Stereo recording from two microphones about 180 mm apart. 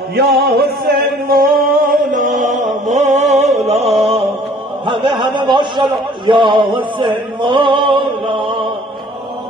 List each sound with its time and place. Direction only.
0.4 s music: 60° right (ahead or behind); by 4.3 s 35° right (ahead or behind)
4.8 s a man's voice: 25° right (ahead or behind)